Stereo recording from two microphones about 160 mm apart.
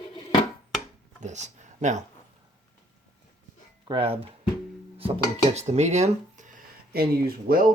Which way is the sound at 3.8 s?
35° right (ahead or behind).